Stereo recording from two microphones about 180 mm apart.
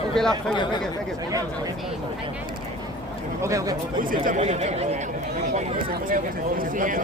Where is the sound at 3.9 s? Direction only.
50° right (ahead or behind).